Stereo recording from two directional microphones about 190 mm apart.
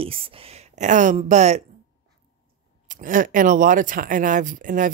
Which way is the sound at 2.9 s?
45° right (ahead or behind).